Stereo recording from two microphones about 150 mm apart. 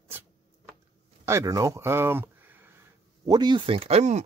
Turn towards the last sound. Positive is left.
turn(degrees=-50)  # may be behind; listen again after turning